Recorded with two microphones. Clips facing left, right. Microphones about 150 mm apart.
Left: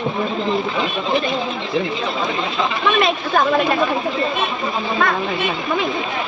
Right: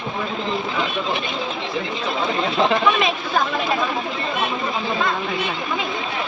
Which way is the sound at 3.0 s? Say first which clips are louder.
Left 4 dB; 65° left (ahead or behind).